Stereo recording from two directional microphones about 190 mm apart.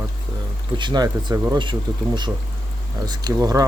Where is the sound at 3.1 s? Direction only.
20° right (ahead or behind).